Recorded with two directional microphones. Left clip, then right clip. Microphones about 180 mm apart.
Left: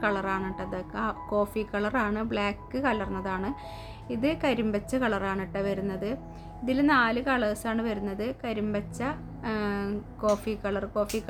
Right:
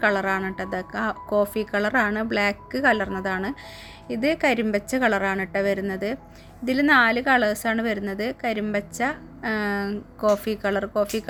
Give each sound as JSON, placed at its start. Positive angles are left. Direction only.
{"t": 0.0, "sound": "a woman's voice", "side_deg": -25}